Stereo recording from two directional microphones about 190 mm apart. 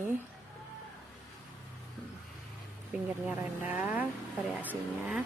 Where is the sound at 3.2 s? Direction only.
10° right (ahead or behind).